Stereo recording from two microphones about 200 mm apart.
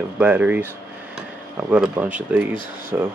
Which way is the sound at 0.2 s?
10° right (ahead or behind).